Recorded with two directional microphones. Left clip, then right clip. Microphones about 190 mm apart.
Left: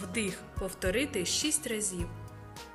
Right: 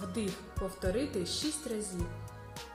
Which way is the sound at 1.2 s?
35° left (ahead or behind).